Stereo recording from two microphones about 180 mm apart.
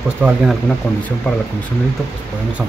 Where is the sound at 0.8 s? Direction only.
5° left (ahead or behind).